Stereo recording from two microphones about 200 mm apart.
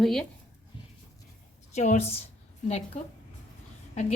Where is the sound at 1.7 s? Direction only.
35° left (ahead or behind).